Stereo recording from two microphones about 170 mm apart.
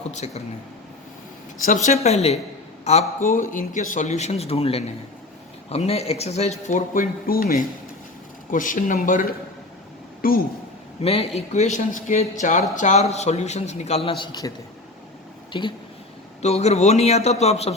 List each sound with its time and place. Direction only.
0.1 s speech: 40° left (ahead or behind)
1.6 s a man's voice: 45° left (ahead or behind)
3.2 s a man's voice: 50° left (ahead or behind)
11.0 s speech: 35° left (ahead or behind)
16.4 s speech: 40° left (ahead or behind)